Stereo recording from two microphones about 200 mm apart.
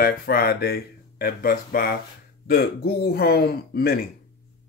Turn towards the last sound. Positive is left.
turn(degrees=50)  # may be behind; listen again after turning